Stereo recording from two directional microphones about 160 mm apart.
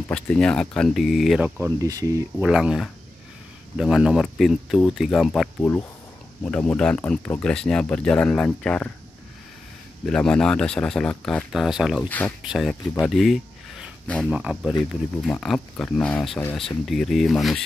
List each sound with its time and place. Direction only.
0.1 s speech: 5° left (ahead or behind)
1.6 s speech: 20° right (ahead or behind)
2.4 s speech: 5° right (ahead or behind)
5.6 s speech: 15° left (ahead or behind)
10.0 s speech: 5° left (ahead or behind)
12.1 s speech: 10° left (ahead or behind)
12.4 s speech: centre (ahead or behind)
13.0 s a sound: centre (ahead or behind)
14.3 s speech: 5° right (ahead or behind)